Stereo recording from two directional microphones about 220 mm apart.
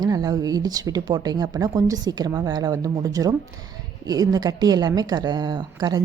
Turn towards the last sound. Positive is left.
turn(degrees=-20)  # may be behind; listen again after turning